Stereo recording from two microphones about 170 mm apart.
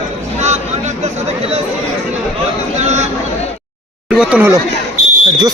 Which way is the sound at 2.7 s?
40° right (ahead or behind).